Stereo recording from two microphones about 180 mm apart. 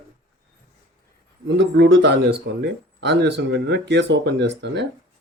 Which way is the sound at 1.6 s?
75° right (ahead or behind).